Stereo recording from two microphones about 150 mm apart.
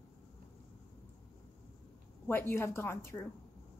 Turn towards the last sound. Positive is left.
turn(degrees=15)  # may be behind; listen again after turning